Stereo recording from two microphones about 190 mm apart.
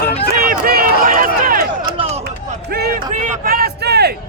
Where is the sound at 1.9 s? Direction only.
30° right (ahead or behind).